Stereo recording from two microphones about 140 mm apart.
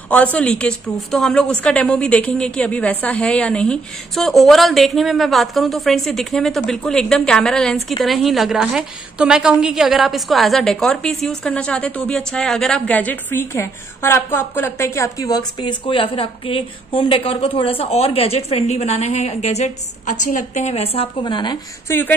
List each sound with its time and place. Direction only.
0.1 s a woman's voice: 10° left (ahead or behind); by 21.1 s 45° left (ahead or behind)
21.2 s speech: 35° left (ahead or behind)
21.8 s a woman's voice: 15° left (ahead or behind)